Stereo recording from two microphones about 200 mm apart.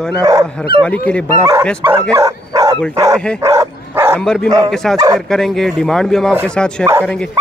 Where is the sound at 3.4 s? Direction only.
15° right (ahead or behind).